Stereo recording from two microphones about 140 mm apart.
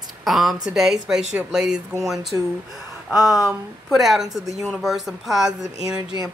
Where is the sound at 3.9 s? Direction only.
Centre (ahead or behind).